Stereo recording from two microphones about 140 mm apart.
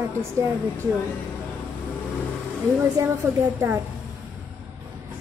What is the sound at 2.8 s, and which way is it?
Speech, 15° right (ahead or behind).